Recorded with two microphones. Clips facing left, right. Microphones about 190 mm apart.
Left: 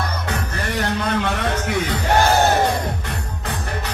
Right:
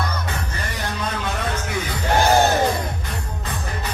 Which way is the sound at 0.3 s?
60° left (ahead or behind).